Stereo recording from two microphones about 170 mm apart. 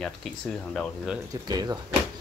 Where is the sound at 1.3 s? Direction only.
20° right (ahead or behind).